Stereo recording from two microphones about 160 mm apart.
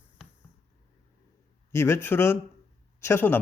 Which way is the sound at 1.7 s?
15° left (ahead or behind).